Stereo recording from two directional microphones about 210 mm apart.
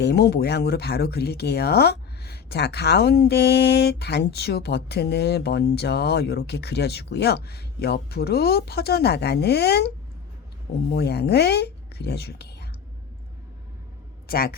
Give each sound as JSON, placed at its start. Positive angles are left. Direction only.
{"t": 0.0, "sound": "speech", "side_deg": 50}
{"t": 10.9, "sound": "speech", "side_deg": 50}
{"t": 14.3, "sound": "speech", "side_deg": 45}